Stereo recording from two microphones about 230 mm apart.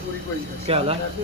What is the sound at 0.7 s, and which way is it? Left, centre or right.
Speech, right.